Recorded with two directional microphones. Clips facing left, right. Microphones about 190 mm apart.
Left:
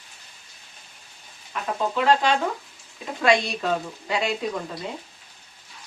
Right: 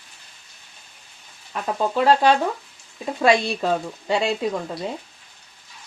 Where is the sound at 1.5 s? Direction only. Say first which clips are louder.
Right 3 dB; 35° right (ahead or behind).